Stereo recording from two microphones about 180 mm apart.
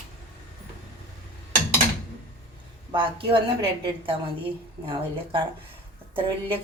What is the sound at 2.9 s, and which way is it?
A woman's voice, 25° right (ahead or behind).